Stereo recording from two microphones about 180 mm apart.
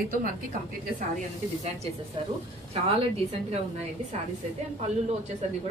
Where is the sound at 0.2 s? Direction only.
50° right (ahead or behind).